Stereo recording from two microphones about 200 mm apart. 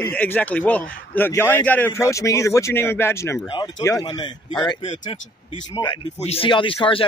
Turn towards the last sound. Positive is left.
turn(degrees=25)  # may be behind; listen again after turning